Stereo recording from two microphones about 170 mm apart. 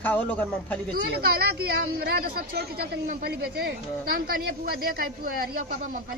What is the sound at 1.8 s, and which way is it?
Speech, 60° right (ahead or behind).